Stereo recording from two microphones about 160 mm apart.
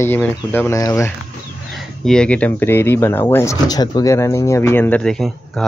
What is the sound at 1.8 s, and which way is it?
Speech, 5° left (ahead or behind).